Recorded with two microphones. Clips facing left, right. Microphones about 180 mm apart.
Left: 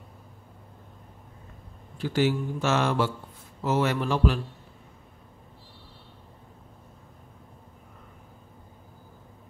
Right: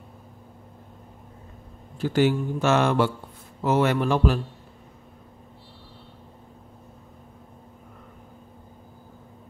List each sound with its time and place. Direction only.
2.0 s speech: 50° right (ahead or behind)